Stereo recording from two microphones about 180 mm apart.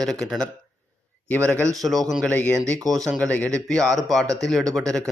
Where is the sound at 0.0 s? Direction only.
Centre (ahead or behind).